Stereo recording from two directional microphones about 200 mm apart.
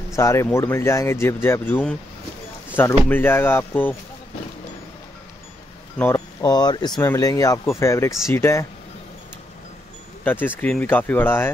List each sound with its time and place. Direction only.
0.1 s speech: 15° left (ahead or behind)
3.1 s speech: 10° left (ahead or behind)
5.9 s speech: 15° left (ahead or behind)
10.2 s speech: 10° left (ahead or behind)